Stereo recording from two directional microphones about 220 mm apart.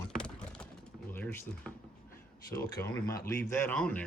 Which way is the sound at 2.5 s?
15° left (ahead or behind).